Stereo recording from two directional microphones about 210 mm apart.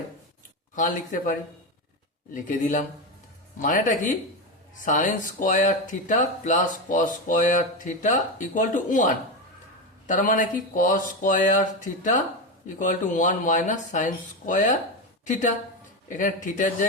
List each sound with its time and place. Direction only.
0.8 s speech: 40° left (ahead or behind)
10.1 s a woman's voice: 40° left (ahead or behind)